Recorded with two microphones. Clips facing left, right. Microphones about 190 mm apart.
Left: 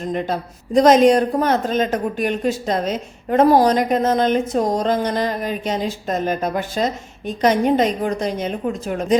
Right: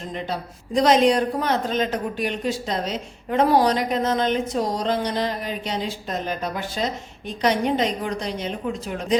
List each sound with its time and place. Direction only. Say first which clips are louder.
0.1 s speech: left 6 dB; 50° left (ahead or behind)